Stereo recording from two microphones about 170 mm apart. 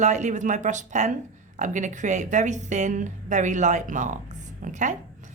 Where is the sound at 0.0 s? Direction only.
45° right (ahead or behind).